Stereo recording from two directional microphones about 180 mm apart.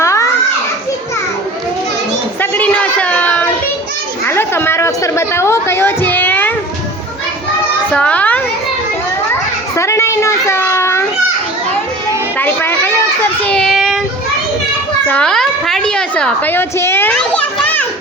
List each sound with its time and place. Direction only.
0.0 s children playing: 15° left (ahead or behind)
2.4 s a sound: 10° left (ahead or behind)
4.3 s chatter: 15° left (ahead or behind)
7.9 s children playing: 5° left (ahead or behind)
12.4 s a sound: 10° left (ahead or behind)
13.4 s child singing: 5° left (ahead or behind)
15.0 s a child's voice: 5° left (ahead or behind)